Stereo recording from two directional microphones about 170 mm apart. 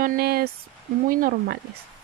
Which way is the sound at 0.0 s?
60° right (ahead or behind).